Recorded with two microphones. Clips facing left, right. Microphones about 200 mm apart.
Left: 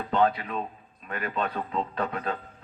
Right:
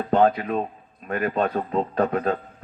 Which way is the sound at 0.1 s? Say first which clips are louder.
Right 5 dB; 45° right (ahead or behind).